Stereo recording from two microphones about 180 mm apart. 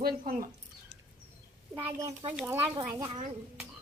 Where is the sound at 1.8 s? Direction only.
15° right (ahead or behind).